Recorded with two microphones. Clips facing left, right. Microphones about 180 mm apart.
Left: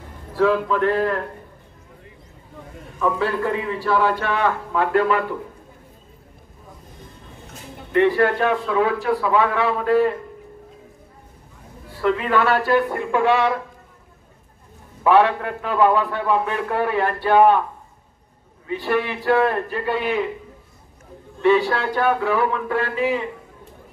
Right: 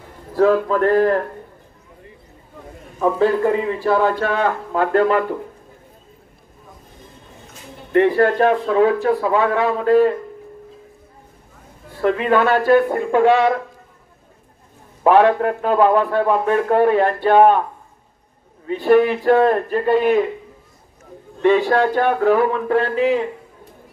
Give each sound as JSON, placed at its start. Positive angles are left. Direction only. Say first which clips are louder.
{"t": 0.4, "sound": "a man's voice", "louder": "right 3 dB", "side_deg": -45}
{"t": 3.0, "sound": "a man's voice", "louder": "right 5 dB", "side_deg": -40}
{"t": 7.9, "sound": "a man's voice", "louder": "right 2 dB", "side_deg": -40}
{"t": 12.0, "sound": "a man's voice", "louder": "right 3 dB", "side_deg": -45}
{"t": 15.0, "sound": "a man's voice", "louder": "right 3 dB", "side_deg": -45}
{"t": 18.7, "sound": "a man's voice", "louder": "right 8 dB", "side_deg": -45}
{"t": 21.4, "sound": "a man's voice", "louder": "right 3 dB", "side_deg": -40}